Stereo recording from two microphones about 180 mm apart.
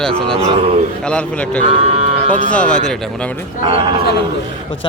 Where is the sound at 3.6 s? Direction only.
30° right (ahead or behind).